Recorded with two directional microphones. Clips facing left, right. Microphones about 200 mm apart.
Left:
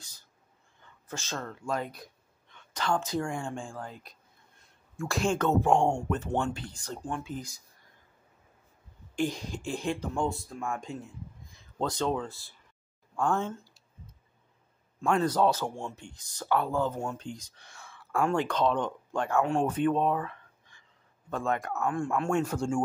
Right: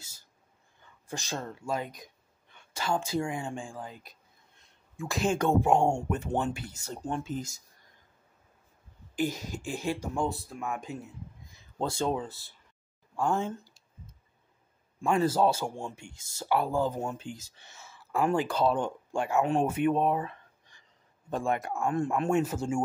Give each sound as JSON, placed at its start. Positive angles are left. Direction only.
{"t": 1.0, "sound": "speech", "side_deg": -15}
{"t": 1.7, "sound": "speech", "side_deg": -5}
{"t": 6.8, "sound": "speech", "side_deg": -25}
{"t": 9.1, "sound": "speech", "side_deg": -5}
{"t": 15.0, "sound": "speech", "side_deg": -5}
{"t": 21.7, "sound": "speech", "side_deg": -25}
{"t": 22.3, "sound": "speech", "side_deg": -5}